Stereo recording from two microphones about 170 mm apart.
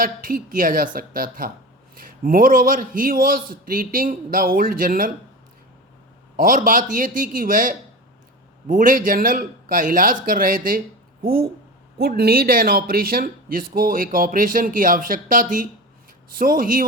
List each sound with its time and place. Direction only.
0.0 s speech: 55° right (ahead or behind)
6.3 s speech: 55° right (ahead or behind)